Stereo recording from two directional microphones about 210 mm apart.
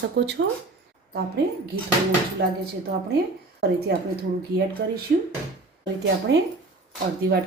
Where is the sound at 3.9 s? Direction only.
50° right (ahead or behind).